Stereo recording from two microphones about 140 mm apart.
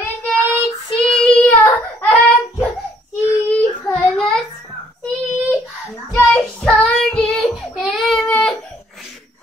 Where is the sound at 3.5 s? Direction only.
10° left (ahead or behind).